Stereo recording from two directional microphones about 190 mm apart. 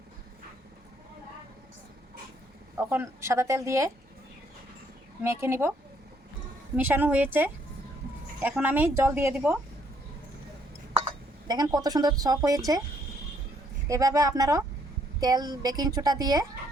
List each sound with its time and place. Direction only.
2.7 s speech: 10° right (ahead or behind)
5.2 s speech: 15° right (ahead or behind)
6.7 s speech: 10° right (ahead or behind)
11.4 s a woman's voice: 20° right (ahead or behind)
13.8 s a woman's voice: 15° right (ahead or behind)